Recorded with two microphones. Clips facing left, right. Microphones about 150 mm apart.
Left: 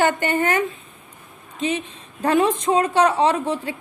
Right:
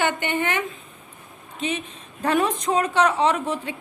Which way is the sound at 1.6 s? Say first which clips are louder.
Left 4 dB; 30° left (ahead or behind).